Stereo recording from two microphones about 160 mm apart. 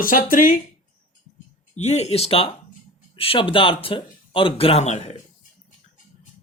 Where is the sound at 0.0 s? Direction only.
60° left (ahead or behind).